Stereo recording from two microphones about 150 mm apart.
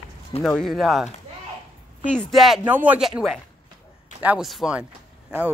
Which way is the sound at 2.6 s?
10° right (ahead or behind).